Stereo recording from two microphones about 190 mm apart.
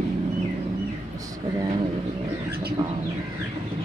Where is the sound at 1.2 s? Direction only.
20° right (ahead or behind).